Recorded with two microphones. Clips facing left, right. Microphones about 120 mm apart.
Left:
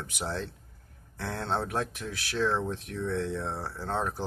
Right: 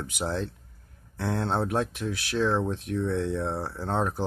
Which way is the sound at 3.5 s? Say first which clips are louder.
Right 4 dB; 25° right (ahead or behind).